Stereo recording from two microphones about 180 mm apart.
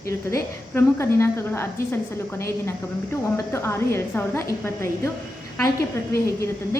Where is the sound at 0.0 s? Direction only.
15° left (ahead or behind).